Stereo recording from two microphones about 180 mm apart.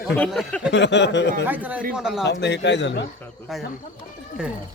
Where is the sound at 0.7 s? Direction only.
75° left (ahead or behind).